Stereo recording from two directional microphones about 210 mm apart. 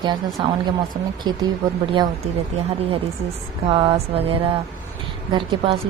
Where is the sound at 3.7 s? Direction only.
25° right (ahead or behind).